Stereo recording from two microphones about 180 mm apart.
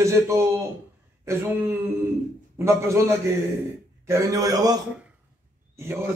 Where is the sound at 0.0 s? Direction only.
15° right (ahead or behind).